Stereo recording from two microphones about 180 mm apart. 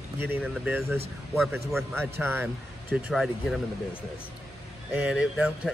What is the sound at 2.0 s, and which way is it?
Speech, 10° right (ahead or behind).